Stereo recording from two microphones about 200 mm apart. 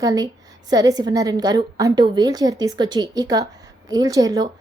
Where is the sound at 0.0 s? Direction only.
20° right (ahead or behind).